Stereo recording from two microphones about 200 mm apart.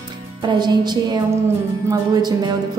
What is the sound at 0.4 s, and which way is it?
A woman's voice, 20° right (ahead or behind).